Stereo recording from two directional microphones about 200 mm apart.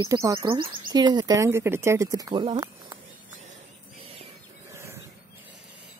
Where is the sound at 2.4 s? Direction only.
25° right (ahead or behind).